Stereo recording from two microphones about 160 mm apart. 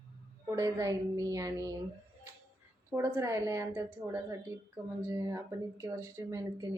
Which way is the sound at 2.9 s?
20° right (ahead or behind).